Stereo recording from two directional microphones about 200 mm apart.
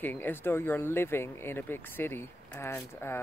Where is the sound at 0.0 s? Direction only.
10° left (ahead or behind).